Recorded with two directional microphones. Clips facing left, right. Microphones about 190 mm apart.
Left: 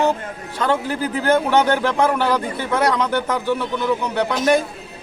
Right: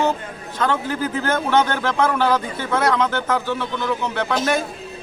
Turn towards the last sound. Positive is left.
turn(degrees=15)  # may be behind; listen again after turning